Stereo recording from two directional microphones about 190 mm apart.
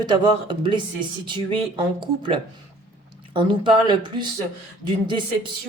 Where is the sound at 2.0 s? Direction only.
25° right (ahead or behind).